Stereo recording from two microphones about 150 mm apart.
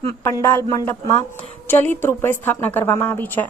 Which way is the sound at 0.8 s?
30° left (ahead or behind).